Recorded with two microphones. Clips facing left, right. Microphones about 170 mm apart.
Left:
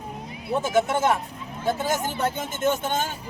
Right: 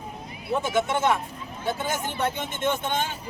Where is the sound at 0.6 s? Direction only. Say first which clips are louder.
Left 3 dB; 40° left (ahead or behind).